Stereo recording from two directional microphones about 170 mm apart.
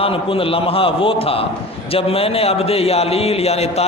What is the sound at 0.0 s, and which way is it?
A man's voice, 30° left (ahead or behind).